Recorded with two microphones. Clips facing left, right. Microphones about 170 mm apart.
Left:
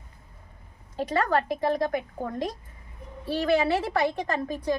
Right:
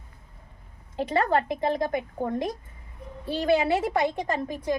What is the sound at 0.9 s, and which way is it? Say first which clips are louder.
A woman's voice: right 1 dB; 25° right (ahead or behind).